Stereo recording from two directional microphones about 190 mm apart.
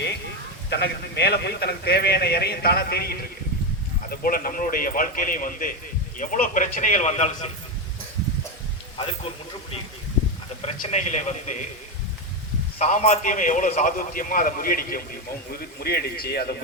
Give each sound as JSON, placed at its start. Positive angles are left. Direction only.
{"t": 0.7, "sound": "a man's voice", "side_deg": 60}
{"t": 9.0, "sound": "a man's voice", "side_deg": 30}
{"t": 12.8, "sound": "a man's voice", "side_deg": 40}